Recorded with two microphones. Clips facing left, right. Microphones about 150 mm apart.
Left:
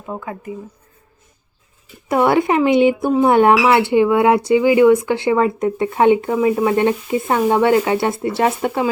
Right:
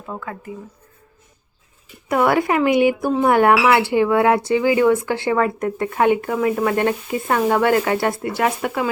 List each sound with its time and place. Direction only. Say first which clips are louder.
0.0 s speech: left 3 dB; 15° left (ahead or behind)
2.0 s speech: left 2 dB; 25° left (ahead or behind)